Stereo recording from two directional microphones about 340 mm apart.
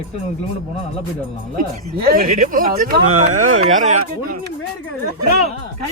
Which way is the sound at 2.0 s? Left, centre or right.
Right.